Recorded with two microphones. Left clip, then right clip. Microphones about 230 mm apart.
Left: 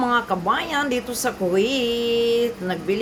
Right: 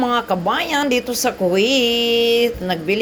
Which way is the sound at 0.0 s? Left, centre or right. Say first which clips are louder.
Right 3 dB; centre.